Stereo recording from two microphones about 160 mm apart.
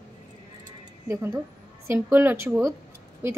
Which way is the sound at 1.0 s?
20° right (ahead or behind).